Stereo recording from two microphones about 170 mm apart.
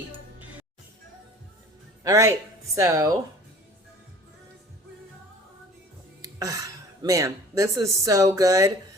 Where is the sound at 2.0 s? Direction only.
20° right (ahead or behind).